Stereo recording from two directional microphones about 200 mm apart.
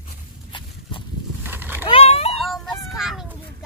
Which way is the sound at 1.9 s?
30° left (ahead or behind).